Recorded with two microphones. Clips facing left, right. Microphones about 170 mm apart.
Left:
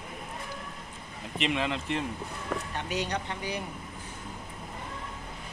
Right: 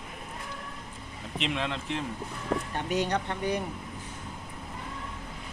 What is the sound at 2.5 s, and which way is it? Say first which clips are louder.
Speech: right 4 dB; 35° right (ahead or behind).